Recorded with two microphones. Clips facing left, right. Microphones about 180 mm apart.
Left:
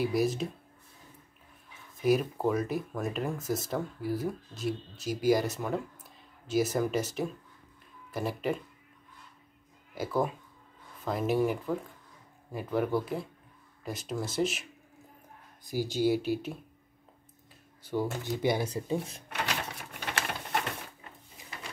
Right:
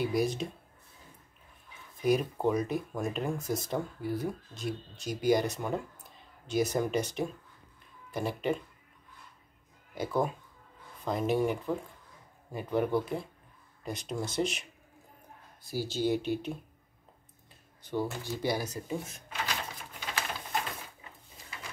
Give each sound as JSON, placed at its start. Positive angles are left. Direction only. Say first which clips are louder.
{"t": 0.0, "sound": "speech", "louder": "left 1 dB", "side_deg": 0}
{"t": 2.0, "sound": "speech", "louder": "left 1 dB", "side_deg": 5}
{"t": 9.9, "sound": "speech", "louder": "even", "side_deg": 0}
{"t": 15.6, "sound": "speech", "louder": "left 3 dB", "side_deg": 15}
{"t": 17.8, "sound": "speech", "louder": "left 2 dB", "side_deg": 15}
{"t": 19.2, "sound": "drawer open or close", "louder": "left 2 dB", "side_deg": 70}
{"t": 20.1, "sound": "pigeon", "louder": "left 2 dB", "side_deg": 70}